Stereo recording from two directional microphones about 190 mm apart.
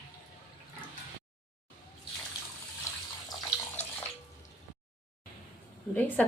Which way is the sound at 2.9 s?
15° left (ahead or behind).